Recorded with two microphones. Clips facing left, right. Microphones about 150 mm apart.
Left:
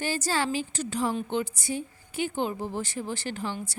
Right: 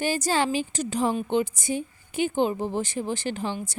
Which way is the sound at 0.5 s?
15° right (ahead or behind).